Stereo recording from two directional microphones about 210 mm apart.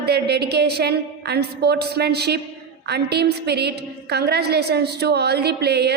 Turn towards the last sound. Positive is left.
turn(degrees=-50)  # may be behind; listen again after turning